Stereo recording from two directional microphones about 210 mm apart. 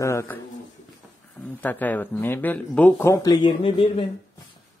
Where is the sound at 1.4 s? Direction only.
10° left (ahead or behind); by 4.0 s 25° left (ahead or behind).